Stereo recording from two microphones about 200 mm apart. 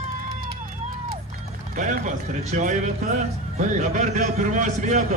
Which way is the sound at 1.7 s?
40° right (ahead or behind).